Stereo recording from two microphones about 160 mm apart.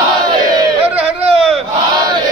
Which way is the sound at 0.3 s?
25° right (ahead or behind).